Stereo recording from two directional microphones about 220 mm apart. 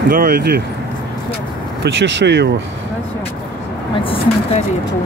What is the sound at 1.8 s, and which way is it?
Speech, 55° right (ahead or behind).